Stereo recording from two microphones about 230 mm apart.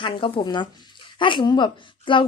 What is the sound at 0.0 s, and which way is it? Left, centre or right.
A woman's voice, left.